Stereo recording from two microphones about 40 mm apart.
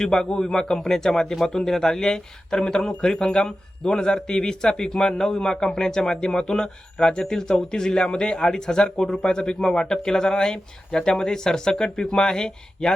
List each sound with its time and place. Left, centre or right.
0.0 s a man's voice: centre